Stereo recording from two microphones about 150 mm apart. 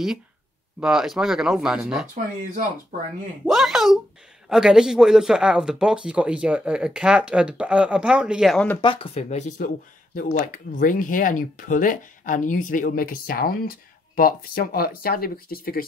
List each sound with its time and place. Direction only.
0.7 s speech: 5° right (ahead or behind)
3.4 s speech: centre (ahead or behind)
8.8 s speech: 40° left (ahead or behind)
10.1 s speech: 65° left (ahead or behind)